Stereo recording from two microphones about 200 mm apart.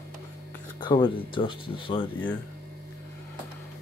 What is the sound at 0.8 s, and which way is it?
Speech, 25° left (ahead or behind).